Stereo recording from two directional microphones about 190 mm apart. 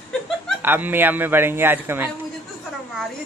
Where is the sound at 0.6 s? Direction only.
10° right (ahead or behind).